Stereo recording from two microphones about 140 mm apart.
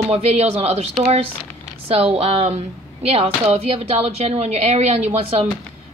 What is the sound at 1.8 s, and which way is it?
Speech, 45° right (ahead or behind).